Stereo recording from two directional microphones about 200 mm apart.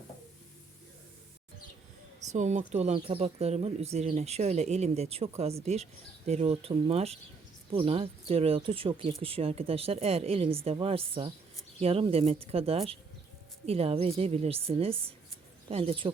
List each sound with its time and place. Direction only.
2.3 s speech: 35° right (ahead or behind)